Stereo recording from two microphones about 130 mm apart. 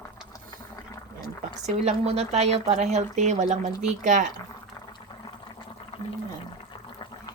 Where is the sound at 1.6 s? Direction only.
55° right (ahead or behind); by 4.2 s 70° right (ahead or behind).